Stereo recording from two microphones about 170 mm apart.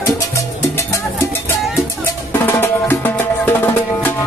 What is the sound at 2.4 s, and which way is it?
Music, 15° left (ahead or behind).